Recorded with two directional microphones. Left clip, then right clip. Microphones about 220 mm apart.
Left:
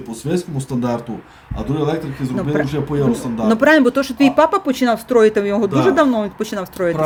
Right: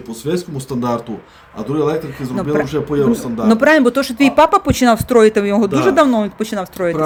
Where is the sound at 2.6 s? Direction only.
25° right (ahead or behind).